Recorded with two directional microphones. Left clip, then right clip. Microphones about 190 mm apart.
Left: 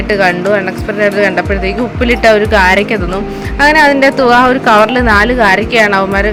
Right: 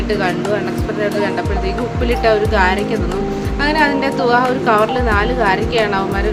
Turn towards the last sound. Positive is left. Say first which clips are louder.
# left 7 dB
turn(degrees=40)  # may be behind; listen again after turning